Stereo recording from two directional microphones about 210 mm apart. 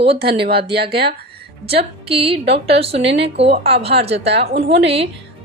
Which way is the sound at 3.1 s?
55° right (ahead or behind).